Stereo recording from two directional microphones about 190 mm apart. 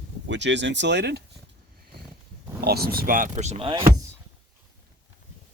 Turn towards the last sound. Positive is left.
turn(degrees=-35)  # may be behind; listen again after turning